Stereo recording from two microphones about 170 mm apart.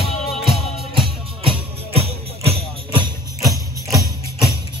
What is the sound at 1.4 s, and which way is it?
Music, 35° right (ahead or behind).